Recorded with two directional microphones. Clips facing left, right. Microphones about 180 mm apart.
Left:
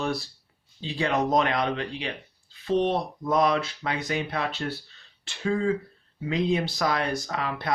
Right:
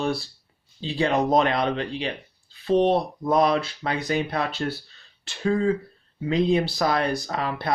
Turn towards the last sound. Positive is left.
turn(degrees=-35)  # may be behind; listen again after turning